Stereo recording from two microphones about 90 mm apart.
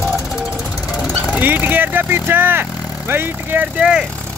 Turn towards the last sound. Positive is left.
turn(degrees=-10)  # may be behind; listen again after turning